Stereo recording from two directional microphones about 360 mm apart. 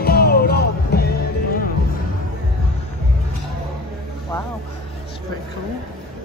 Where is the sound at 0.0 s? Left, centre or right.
Left.